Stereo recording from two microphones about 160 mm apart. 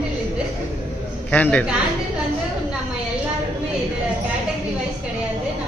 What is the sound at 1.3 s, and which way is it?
Speech, 10° left (ahead or behind).